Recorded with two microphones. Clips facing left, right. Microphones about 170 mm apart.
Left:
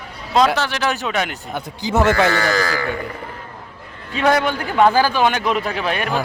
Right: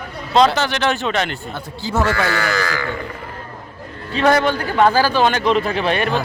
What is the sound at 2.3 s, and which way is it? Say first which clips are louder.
Speech: left 2 dB; 35° left (ahead or behind).